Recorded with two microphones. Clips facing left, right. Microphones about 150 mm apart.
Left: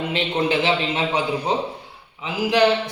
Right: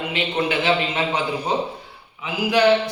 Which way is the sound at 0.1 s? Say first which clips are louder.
Left 1 dB; 30° left (ahead or behind).